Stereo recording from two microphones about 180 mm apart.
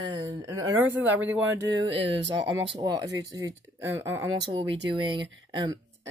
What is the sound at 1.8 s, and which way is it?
Speech, 25° right (ahead or behind).